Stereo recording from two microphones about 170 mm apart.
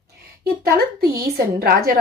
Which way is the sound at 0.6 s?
65° right (ahead or behind).